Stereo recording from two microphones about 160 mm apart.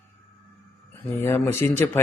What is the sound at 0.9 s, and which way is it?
A man's voice, 15° left (ahead or behind).